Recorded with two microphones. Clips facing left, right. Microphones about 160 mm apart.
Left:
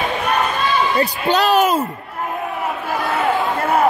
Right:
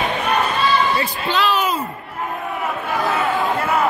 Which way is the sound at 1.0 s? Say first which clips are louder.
Left 4 dB; 40° left (ahead or behind).